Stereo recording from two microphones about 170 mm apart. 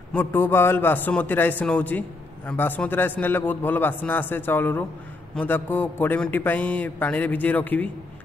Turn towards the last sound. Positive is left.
turn(degrees=10)  # may be behind; listen again after turning